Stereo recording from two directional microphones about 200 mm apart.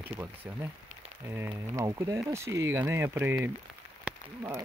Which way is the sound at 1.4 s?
15° right (ahead or behind).